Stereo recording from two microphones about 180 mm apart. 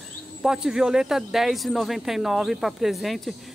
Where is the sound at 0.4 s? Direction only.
5° right (ahead or behind).